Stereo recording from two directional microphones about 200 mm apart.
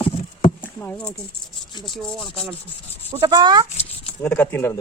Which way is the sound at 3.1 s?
25° right (ahead or behind).